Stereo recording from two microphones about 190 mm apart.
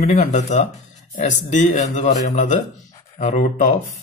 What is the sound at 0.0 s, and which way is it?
Speech, 40° left (ahead or behind).